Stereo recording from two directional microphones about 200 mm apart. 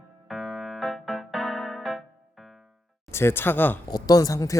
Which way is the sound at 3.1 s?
10° left (ahead or behind).